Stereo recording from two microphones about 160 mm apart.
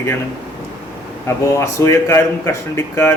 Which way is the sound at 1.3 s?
15° left (ahead or behind).